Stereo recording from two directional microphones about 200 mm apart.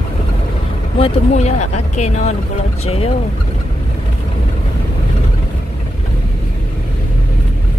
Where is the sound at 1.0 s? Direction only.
35° left (ahead or behind).